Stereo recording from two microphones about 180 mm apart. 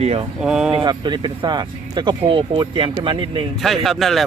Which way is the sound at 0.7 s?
25° right (ahead or behind).